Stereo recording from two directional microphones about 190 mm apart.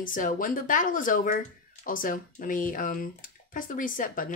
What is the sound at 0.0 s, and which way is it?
Speech, 45° left (ahead or behind).